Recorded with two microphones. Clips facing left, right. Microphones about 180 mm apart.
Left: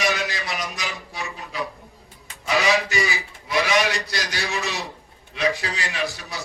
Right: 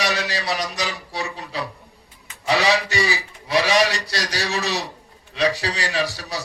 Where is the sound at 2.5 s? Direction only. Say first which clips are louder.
Right 2 dB; 35° right (ahead or behind).